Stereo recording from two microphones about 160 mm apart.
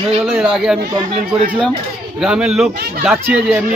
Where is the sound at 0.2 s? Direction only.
5° right (ahead or behind).